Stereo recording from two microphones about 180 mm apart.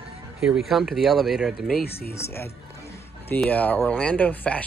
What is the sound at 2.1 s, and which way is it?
Speech, 15° left (ahead or behind).